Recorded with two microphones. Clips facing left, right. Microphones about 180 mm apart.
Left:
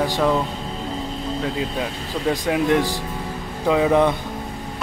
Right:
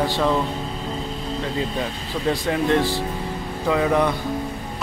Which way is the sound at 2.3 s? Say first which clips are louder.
Left 2 dB; 15° left (ahead or behind).